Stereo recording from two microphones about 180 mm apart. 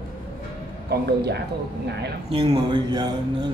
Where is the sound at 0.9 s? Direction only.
65° right (ahead or behind).